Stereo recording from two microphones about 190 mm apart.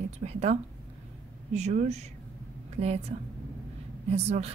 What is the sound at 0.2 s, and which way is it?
A woman's voice, 35° right (ahead or behind).